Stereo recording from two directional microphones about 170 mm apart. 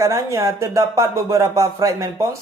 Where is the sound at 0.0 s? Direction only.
20° right (ahead or behind).